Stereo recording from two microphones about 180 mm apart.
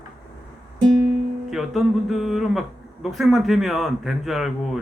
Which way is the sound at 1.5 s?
Centre (ahead or behind).